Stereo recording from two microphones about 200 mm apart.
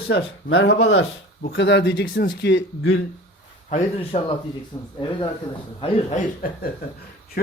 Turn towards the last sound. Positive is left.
turn(degrees=50)  # may be behind; listen again after turning